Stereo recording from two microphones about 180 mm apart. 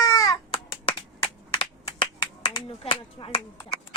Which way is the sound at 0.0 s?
20° left (ahead or behind).